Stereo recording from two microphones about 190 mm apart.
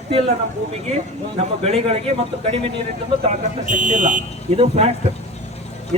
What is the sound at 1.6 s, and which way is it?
A man's voice, 30° right (ahead or behind).